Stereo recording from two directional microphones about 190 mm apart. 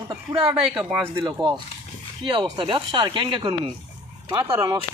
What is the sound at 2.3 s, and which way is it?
Speech, 25° right (ahead or behind).